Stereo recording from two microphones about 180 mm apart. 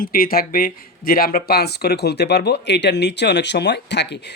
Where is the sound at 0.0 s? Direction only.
55° left (ahead or behind).